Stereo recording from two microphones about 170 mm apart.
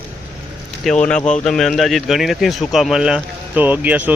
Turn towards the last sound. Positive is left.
turn(degrees=-10)  # may be behind; listen again after turning